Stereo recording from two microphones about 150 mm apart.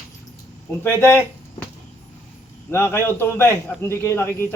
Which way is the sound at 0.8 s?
15° left (ahead or behind).